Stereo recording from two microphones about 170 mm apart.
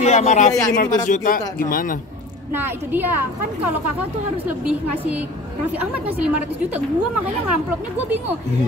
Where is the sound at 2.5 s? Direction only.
10° right (ahead or behind).